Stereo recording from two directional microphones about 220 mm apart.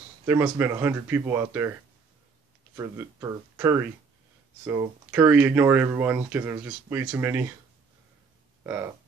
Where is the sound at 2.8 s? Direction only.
15° right (ahead or behind).